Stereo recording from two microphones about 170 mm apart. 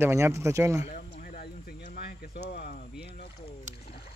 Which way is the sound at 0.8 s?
55° left (ahead or behind).